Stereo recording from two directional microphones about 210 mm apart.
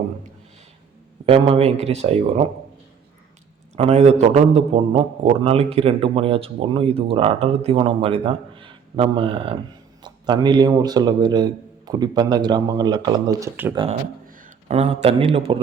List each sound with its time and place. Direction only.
1.2 s a man's voice: 25° right (ahead or behind)
3.8 s a man's voice: 30° right (ahead or behind); by 13.7 s 10° right (ahead or behind)
14.4 s speech: 30° right (ahead or behind)